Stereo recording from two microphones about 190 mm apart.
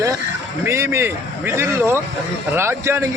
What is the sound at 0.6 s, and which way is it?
A man's voice, 15° right (ahead or behind).